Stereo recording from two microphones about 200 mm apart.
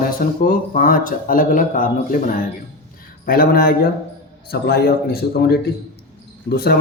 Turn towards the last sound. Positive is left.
turn(degrees=50)  # may be behind; listen again after turning